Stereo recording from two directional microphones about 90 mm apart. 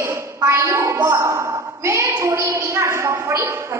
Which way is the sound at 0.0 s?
30° right (ahead or behind).